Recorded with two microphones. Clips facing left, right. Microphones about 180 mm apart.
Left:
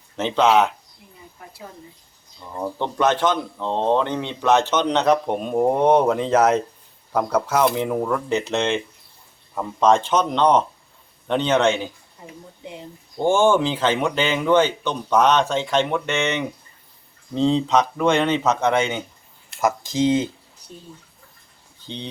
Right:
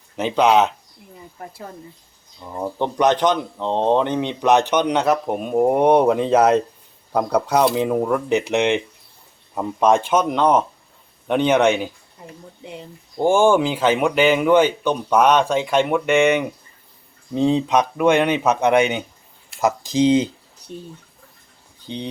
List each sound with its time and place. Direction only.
0.2 s speech: 15° right (ahead or behind)
2.4 s speech: 10° right (ahead or behind)
13.1 s speech: 10° right (ahead or behind)
21.8 s speech: 10° right (ahead or behind)